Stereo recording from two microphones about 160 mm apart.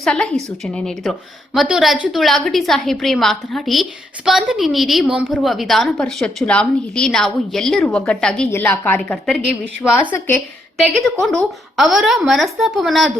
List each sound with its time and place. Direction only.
0.0 s a woman's voice: 5° left (ahead or behind)